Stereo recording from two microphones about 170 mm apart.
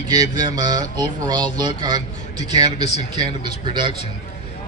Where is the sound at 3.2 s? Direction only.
25° right (ahead or behind).